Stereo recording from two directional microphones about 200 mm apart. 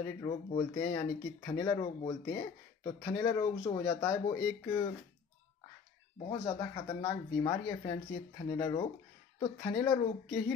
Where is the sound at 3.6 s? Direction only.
15° left (ahead or behind).